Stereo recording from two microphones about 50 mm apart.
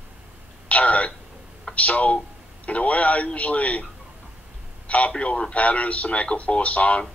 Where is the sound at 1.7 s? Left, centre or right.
Left.